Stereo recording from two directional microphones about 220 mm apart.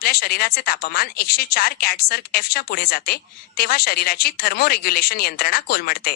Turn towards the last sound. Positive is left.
turn(degrees=45)  # may be behind; listen again after turning